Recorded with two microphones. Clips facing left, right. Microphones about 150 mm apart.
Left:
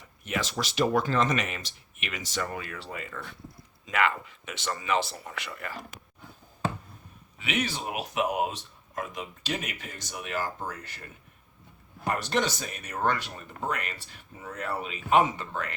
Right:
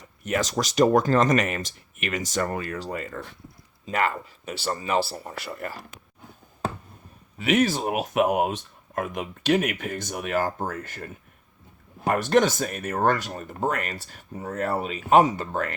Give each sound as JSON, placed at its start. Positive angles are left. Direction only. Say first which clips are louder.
{"t": 0.3, "sound": "speech", "louder": "right 6 dB", "side_deg": -45}
{"t": 7.3, "sound": "speech", "louder": "right 9 dB", "side_deg": -40}